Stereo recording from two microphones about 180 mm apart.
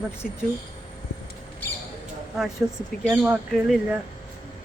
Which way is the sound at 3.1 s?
5° right (ahead or behind).